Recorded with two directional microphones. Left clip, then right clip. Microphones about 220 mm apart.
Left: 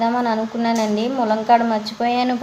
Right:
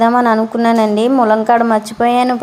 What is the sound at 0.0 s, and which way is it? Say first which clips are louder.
A woman's voice: right 8 dB; 30° right (ahead or behind).